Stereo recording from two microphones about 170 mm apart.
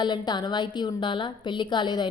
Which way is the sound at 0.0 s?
25° left (ahead or behind).